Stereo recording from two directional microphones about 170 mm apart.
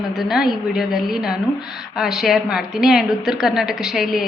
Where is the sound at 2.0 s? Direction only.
Centre (ahead or behind).